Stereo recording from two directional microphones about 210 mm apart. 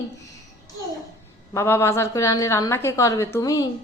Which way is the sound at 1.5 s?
10° left (ahead or behind).